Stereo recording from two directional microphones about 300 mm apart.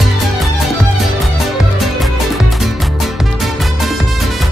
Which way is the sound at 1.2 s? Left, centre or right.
Centre.